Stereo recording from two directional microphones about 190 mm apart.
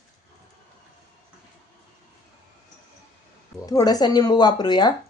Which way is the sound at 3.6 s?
20° left (ahead or behind).